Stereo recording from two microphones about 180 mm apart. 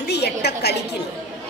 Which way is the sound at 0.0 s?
65° left (ahead or behind).